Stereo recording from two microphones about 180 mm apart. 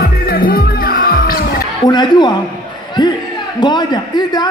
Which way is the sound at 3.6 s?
25° left (ahead or behind).